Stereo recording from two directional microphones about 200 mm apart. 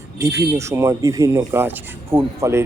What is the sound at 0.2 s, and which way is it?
Speech, 15° right (ahead or behind).